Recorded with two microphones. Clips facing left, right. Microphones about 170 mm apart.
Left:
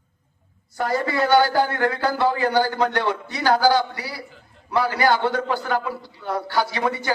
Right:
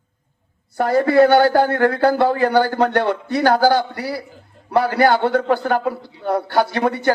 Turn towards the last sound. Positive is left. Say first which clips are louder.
# right 6 dB
turn(degrees=-55)  # may be behind; listen again after turning